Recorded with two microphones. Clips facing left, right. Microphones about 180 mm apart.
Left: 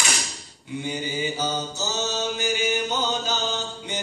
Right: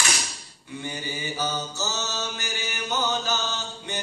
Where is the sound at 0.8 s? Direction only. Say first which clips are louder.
Left 5 dB; 15° left (ahead or behind).